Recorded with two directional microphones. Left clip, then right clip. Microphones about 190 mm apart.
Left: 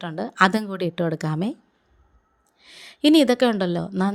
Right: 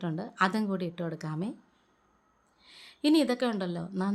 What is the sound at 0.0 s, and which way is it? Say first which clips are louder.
A woman's voice: left 9 dB; 40° left (ahead or behind).